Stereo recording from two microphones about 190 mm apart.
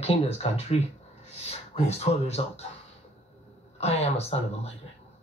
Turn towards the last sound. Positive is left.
turn(degrees=35)  # may be behind; listen again after turning